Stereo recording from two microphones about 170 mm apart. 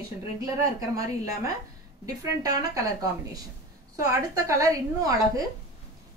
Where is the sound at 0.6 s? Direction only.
20° right (ahead or behind).